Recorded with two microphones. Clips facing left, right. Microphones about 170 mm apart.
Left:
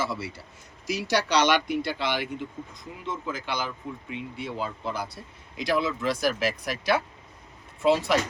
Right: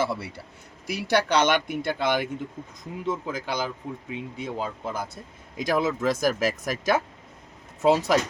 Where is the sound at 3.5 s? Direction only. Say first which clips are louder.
Right 3 dB; 40° right (ahead or behind).